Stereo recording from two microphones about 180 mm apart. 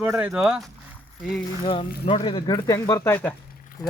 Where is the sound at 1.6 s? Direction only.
30° left (ahead or behind).